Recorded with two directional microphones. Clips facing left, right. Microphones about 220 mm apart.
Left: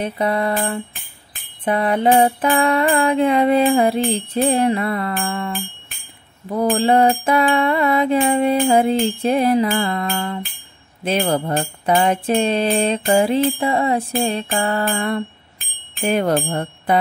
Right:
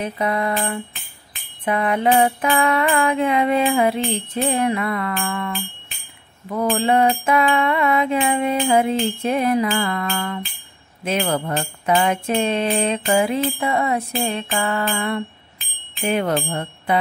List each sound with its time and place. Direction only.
0.0 s music: 30° left (ahead or behind)
5.2 s a sound: 30° left (ahead or behind)
6.5 s music: 35° left (ahead or behind)
13.5 s a sound: 30° left (ahead or behind)
14.5 s music: 35° left (ahead or behind)
15.9 s speech: 45° left (ahead or behind)